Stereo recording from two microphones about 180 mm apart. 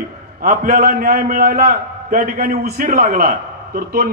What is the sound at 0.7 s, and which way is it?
A man's voice, 50° right (ahead or behind).